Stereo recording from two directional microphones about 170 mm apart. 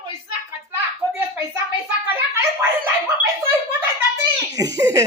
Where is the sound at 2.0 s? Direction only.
10° right (ahead or behind).